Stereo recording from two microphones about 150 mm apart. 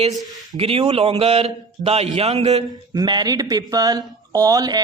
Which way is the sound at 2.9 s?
30° right (ahead or behind).